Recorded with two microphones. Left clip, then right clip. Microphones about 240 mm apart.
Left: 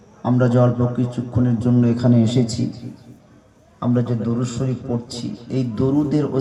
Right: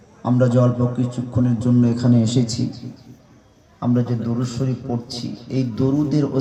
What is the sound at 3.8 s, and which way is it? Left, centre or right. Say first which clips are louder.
A man's voice: left 1 dB; left.